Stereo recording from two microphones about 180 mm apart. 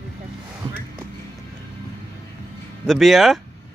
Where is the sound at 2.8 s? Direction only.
Centre (ahead or behind).